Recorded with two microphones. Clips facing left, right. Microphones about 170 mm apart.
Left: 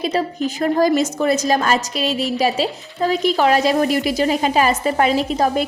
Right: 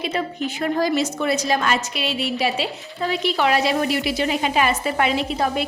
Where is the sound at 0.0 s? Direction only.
40° left (ahead or behind).